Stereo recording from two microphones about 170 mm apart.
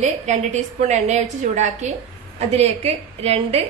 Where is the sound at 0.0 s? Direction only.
45° right (ahead or behind).